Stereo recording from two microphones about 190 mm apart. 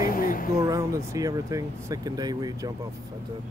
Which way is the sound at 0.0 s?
45° left (ahead or behind).